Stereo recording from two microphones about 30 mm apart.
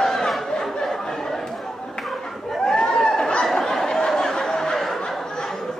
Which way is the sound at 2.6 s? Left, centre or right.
Left.